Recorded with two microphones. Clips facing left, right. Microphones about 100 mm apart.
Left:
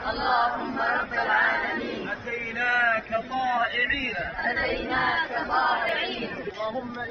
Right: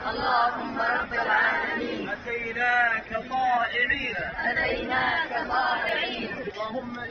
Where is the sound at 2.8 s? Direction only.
75° left (ahead or behind).